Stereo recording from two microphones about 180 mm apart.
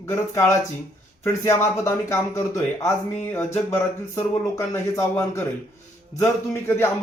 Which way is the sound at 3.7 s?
15° left (ahead or behind).